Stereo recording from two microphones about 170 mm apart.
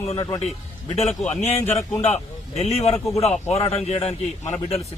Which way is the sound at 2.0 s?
40° left (ahead or behind).